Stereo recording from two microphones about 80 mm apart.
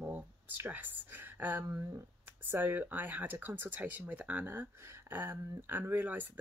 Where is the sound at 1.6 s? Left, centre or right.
Right.